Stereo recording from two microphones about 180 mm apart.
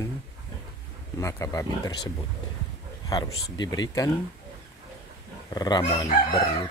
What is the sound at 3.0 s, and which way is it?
Speech, 20° left (ahead or behind).